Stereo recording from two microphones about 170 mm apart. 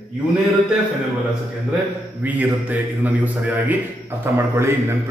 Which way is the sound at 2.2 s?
10° right (ahead or behind).